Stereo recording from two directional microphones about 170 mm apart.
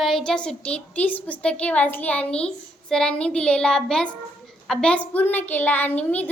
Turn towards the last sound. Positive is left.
turn(degrees=10)  # may be behind; listen again after turning